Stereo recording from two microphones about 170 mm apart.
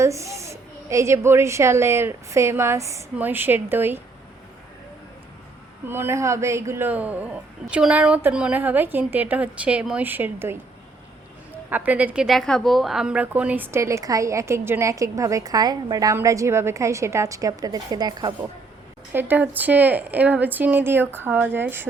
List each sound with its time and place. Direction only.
0.0 s a woman's voice: 20° right (ahead or behind)
5.9 s a woman's voice: 15° right (ahead or behind)
11.7 s a woman's voice: 10° right (ahead or behind)
19.1 s a woman's voice: 10° right (ahead or behind)